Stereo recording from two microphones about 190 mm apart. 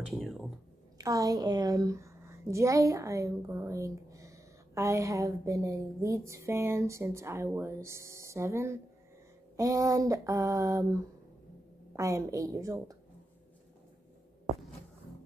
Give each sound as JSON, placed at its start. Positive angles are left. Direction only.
{"t": 0.1, "sound": "speech", "side_deg": 0}
{"t": 0.9, "sound": "a woman's voice", "side_deg": -20}